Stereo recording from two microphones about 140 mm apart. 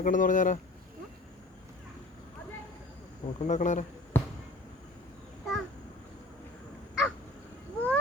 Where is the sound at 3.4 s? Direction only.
60° left (ahead or behind).